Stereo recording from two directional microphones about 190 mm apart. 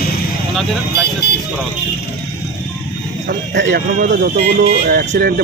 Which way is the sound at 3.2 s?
65° right (ahead or behind).